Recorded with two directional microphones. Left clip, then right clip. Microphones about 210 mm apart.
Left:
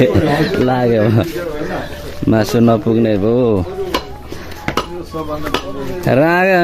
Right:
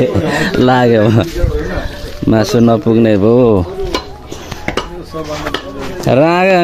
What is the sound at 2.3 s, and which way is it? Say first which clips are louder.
Speech: right 2 dB; 10° right (ahead or behind).